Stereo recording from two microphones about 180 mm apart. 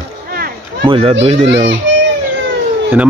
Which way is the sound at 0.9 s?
30° right (ahead or behind).